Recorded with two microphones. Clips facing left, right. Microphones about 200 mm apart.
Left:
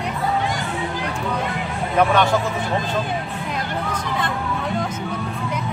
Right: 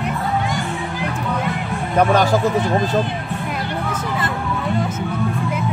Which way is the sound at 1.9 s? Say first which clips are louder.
Right 2 dB; 40° right (ahead or behind).